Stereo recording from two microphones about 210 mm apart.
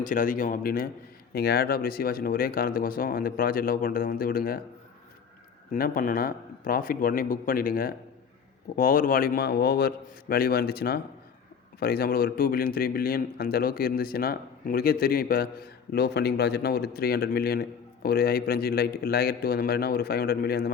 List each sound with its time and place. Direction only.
0.0 s speech: 40° left (ahead or behind)
5.7 s speech: 45° left (ahead or behind)